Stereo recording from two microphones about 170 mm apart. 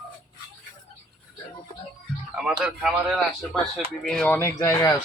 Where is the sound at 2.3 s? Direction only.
5° right (ahead or behind).